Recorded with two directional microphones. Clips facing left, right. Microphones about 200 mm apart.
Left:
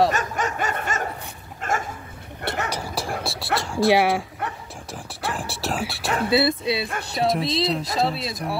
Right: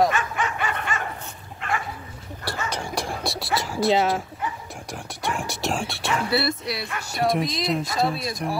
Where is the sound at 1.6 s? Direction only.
45° left (ahead or behind).